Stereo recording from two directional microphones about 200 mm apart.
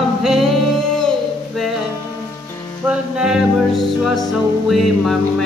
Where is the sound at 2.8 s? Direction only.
5° right (ahead or behind).